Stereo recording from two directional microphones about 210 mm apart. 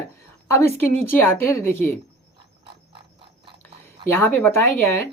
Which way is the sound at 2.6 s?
25° right (ahead or behind).